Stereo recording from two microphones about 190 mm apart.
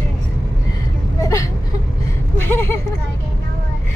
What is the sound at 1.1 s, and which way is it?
Vehicle, 15° left (ahead or behind).